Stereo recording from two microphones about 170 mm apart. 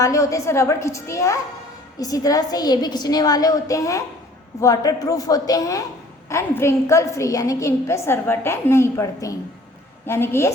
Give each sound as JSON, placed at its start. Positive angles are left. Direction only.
{"t": 0.0, "sound": "a woman's voice", "side_deg": 20}